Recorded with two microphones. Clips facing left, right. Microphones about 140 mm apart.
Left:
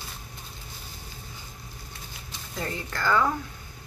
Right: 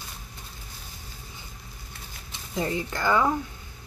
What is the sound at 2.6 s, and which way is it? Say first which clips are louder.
Speech: right 4 dB; 15° right (ahead or behind).